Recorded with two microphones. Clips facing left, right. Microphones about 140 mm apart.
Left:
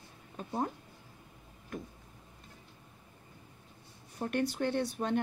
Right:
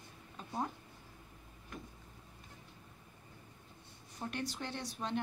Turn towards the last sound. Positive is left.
turn(degrees=55)  # may be behind; listen again after turning